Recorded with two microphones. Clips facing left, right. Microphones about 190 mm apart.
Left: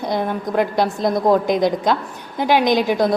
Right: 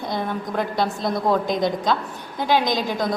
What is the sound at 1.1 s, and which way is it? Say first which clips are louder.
A woman's voice: left 5 dB; 20° left (ahead or behind).